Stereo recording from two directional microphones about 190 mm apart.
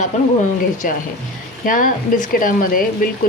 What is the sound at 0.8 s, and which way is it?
Speech, 45° left (ahead or behind).